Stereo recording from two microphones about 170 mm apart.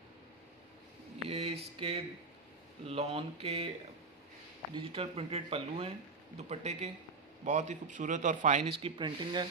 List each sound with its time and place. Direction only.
1.3 s a sound: 35° right (ahead or behind)
2.8 s speech: 35° right (ahead or behind)
4.7 s speech: 35° right (ahead or behind)